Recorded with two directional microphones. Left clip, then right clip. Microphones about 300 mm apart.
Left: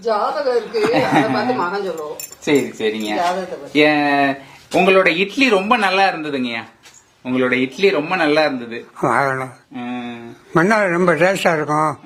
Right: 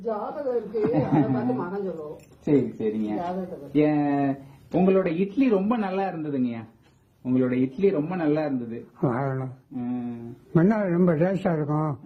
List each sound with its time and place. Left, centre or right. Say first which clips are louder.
0.0 s speech: left 11 dB; centre